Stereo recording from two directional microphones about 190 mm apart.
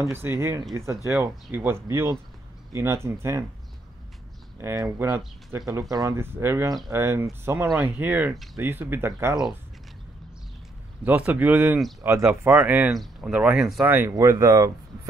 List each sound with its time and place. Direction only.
0.0 s speech: 10° right (ahead or behind)
4.6 s speech: 15° right (ahead or behind)
11.1 s speech: 10° right (ahead or behind)